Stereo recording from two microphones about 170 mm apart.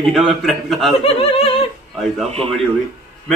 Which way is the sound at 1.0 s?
35° left (ahead or behind).